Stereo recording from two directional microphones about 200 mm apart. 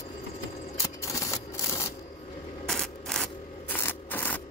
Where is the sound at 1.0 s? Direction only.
15° left (ahead or behind).